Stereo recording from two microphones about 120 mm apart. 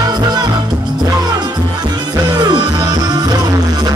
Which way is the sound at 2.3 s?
35° right (ahead or behind).